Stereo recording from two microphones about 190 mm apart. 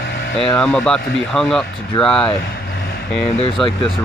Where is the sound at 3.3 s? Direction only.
30° left (ahead or behind).